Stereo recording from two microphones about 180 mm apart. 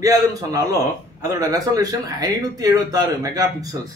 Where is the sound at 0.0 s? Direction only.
20° right (ahead or behind).